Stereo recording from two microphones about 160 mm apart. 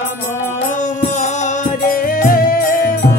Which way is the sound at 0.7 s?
50° left (ahead or behind).